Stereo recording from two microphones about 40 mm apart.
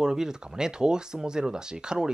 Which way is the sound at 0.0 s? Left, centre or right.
Centre.